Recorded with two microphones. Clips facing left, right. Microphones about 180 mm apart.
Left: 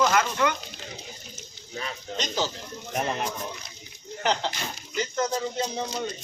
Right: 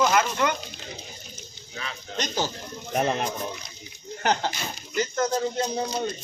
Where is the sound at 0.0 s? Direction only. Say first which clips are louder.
Right 1 dB; 15° right (ahead or behind).